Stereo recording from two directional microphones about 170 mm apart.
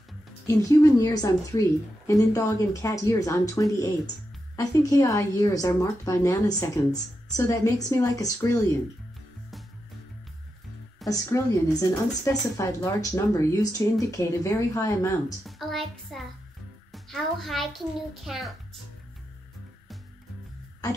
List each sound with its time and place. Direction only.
0.5 s speech: 20° left (ahead or behind)
11.1 s speech: 20° left (ahead or behind)
15.4 s a child's voice: centre (ahead or behind)